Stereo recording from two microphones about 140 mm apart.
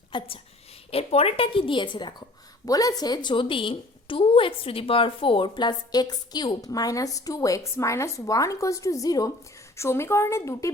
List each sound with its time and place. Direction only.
0.1 s a woman's voice: 35° left (ahead or behind)